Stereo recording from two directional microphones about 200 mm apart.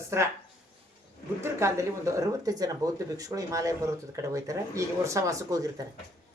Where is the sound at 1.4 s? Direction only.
15° right (ahead or behind).